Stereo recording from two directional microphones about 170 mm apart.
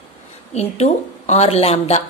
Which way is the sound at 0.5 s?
40° left (ahead or behind).